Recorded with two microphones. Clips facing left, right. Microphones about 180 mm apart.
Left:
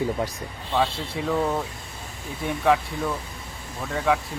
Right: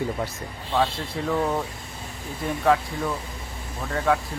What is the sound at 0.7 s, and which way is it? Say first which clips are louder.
Speech: even; centre (ahead or behind).